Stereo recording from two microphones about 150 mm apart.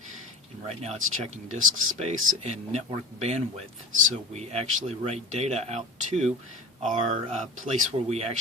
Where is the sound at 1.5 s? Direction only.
50° right (ahead or behind).